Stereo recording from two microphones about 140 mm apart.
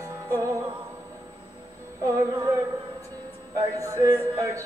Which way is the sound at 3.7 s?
20° right (ahead or behind).